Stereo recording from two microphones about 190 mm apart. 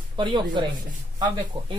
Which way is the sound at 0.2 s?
25° right (ahead or behind).